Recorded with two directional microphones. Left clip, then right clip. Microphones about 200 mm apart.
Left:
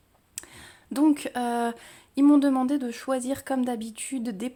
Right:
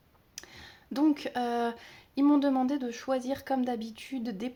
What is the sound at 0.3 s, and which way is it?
Speech, 30° left (ahead or behind).